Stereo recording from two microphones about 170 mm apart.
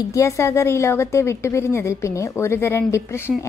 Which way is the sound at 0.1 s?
15° left (ahead or behind).